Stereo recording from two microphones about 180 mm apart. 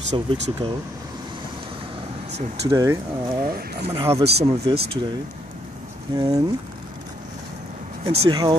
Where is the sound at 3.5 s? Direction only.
55° right (ahead or behind).